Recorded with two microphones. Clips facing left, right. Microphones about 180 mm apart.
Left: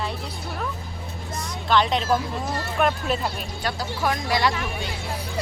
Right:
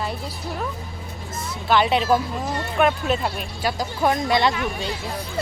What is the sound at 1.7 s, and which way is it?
Speech, 5° right (ahead or behind).